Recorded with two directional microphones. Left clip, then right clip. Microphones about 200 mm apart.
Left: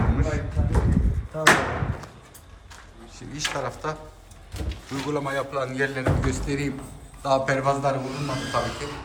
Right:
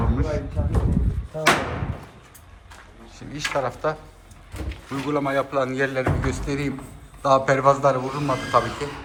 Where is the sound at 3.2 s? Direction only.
10° left (ahead or behind).